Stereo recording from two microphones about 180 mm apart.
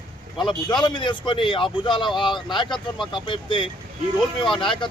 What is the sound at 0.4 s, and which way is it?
Speech, 25° left (ahead or behind).